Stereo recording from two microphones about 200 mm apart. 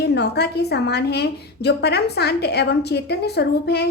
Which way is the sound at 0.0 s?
55° left (ahead or behind).